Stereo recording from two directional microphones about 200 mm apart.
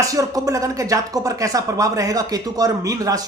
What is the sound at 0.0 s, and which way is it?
Speech, 15° right (ahead or behind).